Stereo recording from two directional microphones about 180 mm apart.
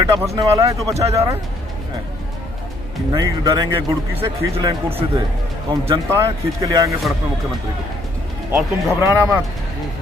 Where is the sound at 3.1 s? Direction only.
20° right (ahead or behind).